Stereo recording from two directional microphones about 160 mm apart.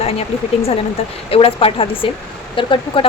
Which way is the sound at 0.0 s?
40° left (ahead or behind).